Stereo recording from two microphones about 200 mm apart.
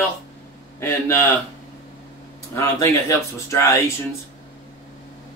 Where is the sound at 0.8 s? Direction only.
15° left (ahead or behind).